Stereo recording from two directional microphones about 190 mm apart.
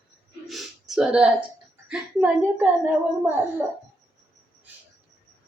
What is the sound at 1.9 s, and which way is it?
Child singing, 5° right (ahead or behind).